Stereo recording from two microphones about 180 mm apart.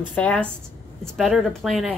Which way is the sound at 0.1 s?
5° left (ahead or behind).